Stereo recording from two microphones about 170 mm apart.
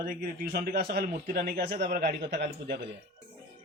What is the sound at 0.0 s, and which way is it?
A man's voice, 60° right (ahead or behind).